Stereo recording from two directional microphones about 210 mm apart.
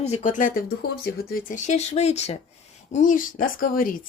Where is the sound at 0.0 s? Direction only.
35° left (ahead or behind).